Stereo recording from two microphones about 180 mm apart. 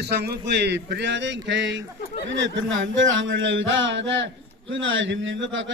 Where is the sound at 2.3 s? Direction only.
90° right.